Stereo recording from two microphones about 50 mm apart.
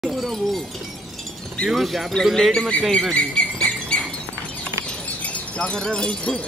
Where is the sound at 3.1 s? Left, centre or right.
Centre.